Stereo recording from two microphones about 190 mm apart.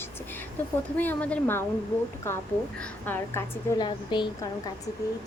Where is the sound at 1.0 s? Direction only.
10° left (ahead or behind).